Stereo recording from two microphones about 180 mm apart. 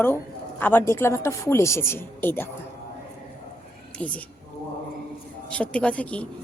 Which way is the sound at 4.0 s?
5° left (ahead or behind).